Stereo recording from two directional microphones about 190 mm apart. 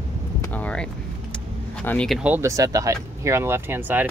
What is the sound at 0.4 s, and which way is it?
Vehicle, 10° left (ahead or behind).